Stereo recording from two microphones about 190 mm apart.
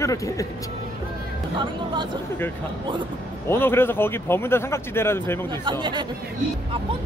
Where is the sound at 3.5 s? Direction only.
10° left (ahead or behind).